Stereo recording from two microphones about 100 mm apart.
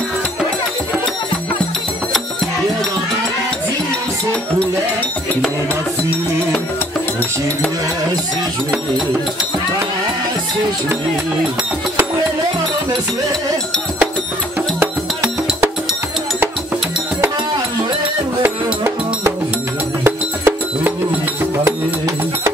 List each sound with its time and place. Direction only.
18.4 s music: 25° right (ahead or behind)